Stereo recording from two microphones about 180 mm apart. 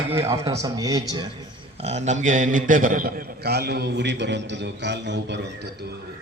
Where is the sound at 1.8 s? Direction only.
40° right (ahead or behind); by 5.4 s 75° right (ahead or behind).